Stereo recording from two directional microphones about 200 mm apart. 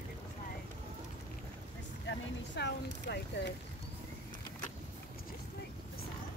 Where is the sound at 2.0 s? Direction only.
60° left (ahead or behind).